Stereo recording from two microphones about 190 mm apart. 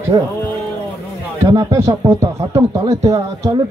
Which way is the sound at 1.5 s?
20° right (ahead or behind).